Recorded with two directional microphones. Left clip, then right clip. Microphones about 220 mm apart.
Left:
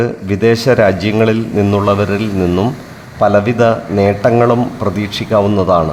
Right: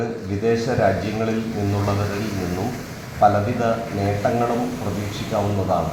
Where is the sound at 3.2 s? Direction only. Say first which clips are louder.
Left 7 dB; 40° left (ahead or behind).